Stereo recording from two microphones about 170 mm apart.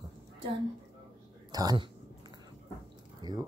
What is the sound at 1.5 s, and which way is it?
Speech, 25° right (ahead or behind).